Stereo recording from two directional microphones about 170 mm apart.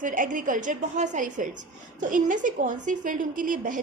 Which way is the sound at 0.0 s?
50° right (ahead or behind).